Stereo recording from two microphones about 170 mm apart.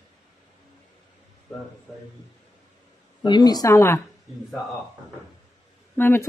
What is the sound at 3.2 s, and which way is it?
Speech, 25° left (ahead or behind).